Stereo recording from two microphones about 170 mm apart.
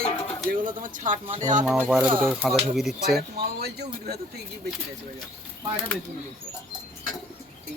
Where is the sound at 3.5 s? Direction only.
70° right (ahead or behind).